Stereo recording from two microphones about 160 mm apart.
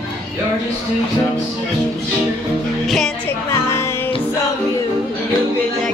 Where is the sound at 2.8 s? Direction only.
Centre (ahead or behind).